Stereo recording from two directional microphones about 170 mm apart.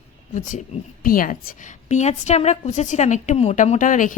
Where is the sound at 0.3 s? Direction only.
50° left (ahead or behind).